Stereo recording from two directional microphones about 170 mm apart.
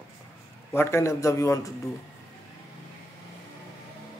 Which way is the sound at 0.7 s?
15° left (ahead or behind).